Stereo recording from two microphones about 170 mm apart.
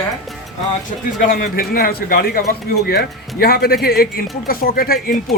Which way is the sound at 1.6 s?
60° left (ahead or behind).